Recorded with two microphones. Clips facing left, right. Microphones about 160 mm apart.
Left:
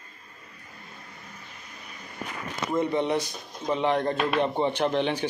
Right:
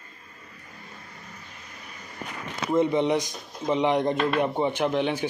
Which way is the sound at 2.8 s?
15° right (ahead or behind).